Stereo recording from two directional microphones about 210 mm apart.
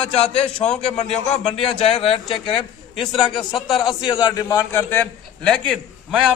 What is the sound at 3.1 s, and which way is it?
Speech, centre (ahead or behind).